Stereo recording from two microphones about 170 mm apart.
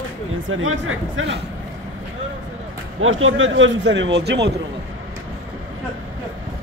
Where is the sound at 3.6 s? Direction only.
90° right.